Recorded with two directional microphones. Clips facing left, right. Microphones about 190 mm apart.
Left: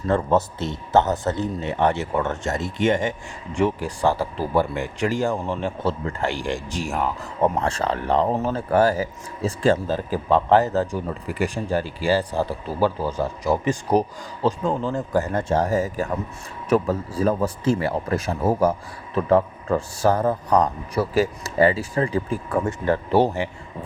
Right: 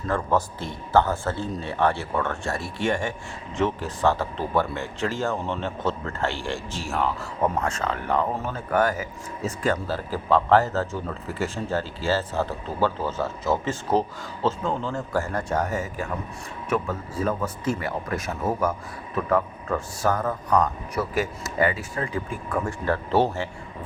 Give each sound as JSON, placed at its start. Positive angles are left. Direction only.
{"t": 0.1, "sound": "a man's voice", "side_deg": 20}
{"t": 7.6, "sound": "a man's voice", "side_deg": 35}
{"t": 22.9, "sound": "a man's voice", "side_deg": 15}